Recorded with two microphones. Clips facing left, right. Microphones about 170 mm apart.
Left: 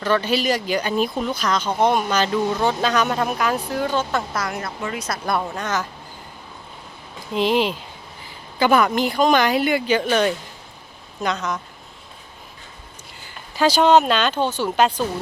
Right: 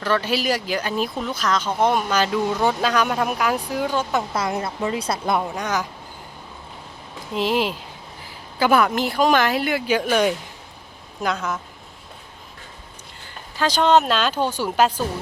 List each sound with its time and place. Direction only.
0.0 s speech: 5° right (ahead or behind)
4.4 s speech: 25° right (ahead or behind)
5.4 s speech: 15° right (ahead or behind)
7.3 s speech: 5° right (ahead or behind)
13.6 s speech: 10° left (ahead or behind); by 14.8 s 10° right (ahead or behind)